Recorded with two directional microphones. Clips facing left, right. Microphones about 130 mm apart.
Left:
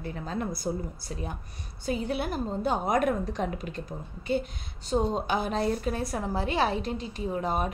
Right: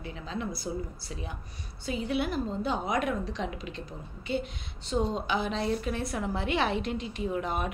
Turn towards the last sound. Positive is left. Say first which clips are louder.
# left 2 dB
turn(degrees=35)  # may be behind; listen again after turning